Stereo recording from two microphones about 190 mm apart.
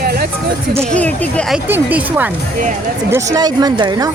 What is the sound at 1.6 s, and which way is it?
Speech, 10° right (ahead or behind).